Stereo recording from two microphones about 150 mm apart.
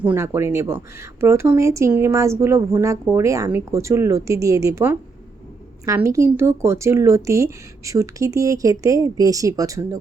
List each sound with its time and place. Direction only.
0.0 s speech: 15° right (ahead or behind)